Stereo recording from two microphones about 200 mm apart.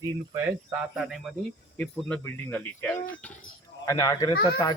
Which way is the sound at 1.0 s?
5° left (ahead or behind).